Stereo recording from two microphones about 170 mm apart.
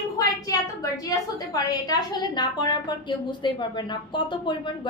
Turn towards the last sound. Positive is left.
turn(degrees=25)  # may be behind; listen again after turning